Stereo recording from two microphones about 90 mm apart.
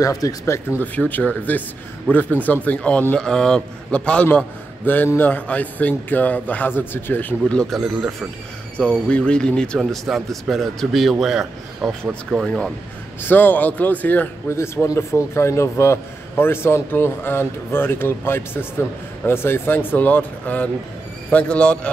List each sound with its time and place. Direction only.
0.0 s speech: 40° left (ahead or behind)
0.7 s a man's voice: 20° left (ahead or behind); by 8.3 s 5° right (ahead or behind)
8.7 s a man's voice: 15° left (ahead or behind)
9.8 s a man's voice: centre (ahead or behind)
12.4 s a man's voice: 5° left (ahead or behind)
13.2 s a man's voice: 20° left (ahead or behind)
14.5 s a man's voice: 30° left (ahead or behind); by 21.7 s 10° left (ahead or behind)